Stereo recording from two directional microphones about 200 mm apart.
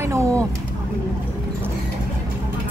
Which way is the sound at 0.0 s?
15° right (ahead or behind).